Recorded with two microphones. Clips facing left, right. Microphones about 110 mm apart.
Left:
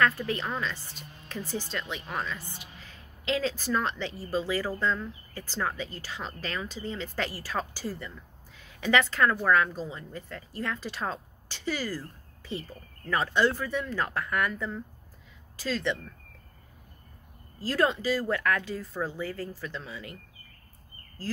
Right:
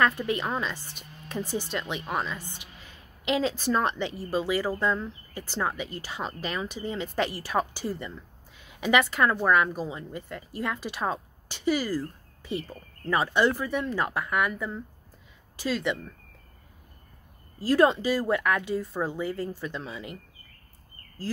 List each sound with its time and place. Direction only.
0.3 s a woman's voice: 20° right (ahead or behind)
17.6 s a woman's voice: 20° right (ahead or behind)